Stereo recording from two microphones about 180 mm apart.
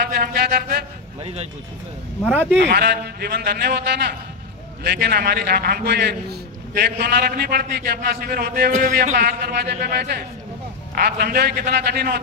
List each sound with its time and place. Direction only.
0.1 s a sound: 60° right (ahead or behind)
1.2 s speech: 35° right (ahead or behind)
2.2 s speech: 10° right (ahead or behind)
2.6 s a man's voice: 60° right (ahead or behind)